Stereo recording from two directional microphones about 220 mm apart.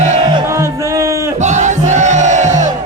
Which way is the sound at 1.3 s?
30° right (ahead or behind).